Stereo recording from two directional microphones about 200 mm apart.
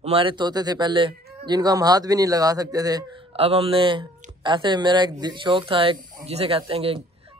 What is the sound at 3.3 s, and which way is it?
Speech, 30° right (ahead or behind).